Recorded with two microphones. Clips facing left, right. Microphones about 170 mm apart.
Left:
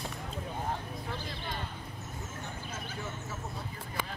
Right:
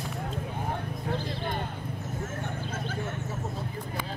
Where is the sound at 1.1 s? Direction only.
55° right (ahead or behind).